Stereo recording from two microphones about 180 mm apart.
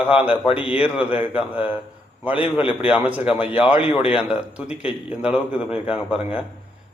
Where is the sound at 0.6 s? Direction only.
30° left (ahead or behind).